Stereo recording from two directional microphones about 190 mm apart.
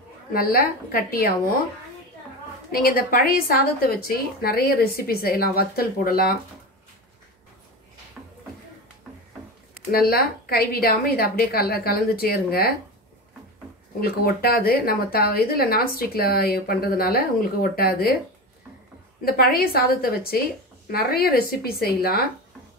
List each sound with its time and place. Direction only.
0.3 s a woman's voice: 50° left (ahead or behind)
2.7 s a woman's voice: 50° left (ahead or behind)
9.8 s a woman's voice: 55° left (ahead or behind)
14.0 s a woman's voice: 55° left (ahead or behind)
19.2 s a woman's voice: 50° left (ahead or behind)